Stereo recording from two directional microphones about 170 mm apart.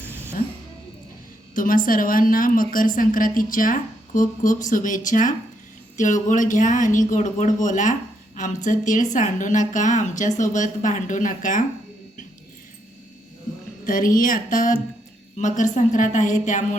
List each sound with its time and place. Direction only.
1.5 s a woman's voice: 55° left (ahead or behind)
13.8 s a woman's voice: 55° left (ahead or behind)